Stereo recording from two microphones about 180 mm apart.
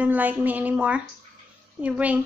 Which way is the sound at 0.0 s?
10° right (ahead or behind).